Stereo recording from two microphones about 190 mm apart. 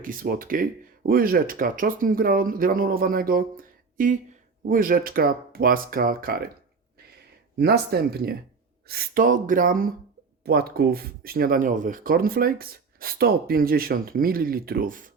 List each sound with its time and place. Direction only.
0.0 s speech: 45° right (ahead or behind)
7.6 s speech: 55° right (ahead or behind)